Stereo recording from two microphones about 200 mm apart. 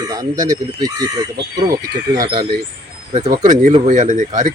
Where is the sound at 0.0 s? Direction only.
20° right (ahead or behind).